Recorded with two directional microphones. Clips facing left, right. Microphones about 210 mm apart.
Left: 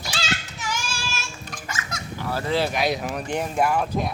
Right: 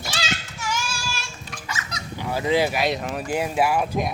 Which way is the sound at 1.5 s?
45° left (ahead or behind).